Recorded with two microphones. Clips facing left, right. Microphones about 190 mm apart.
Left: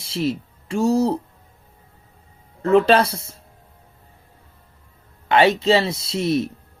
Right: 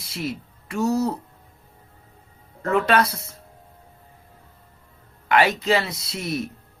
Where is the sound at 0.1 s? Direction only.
30° left (ahead or behind).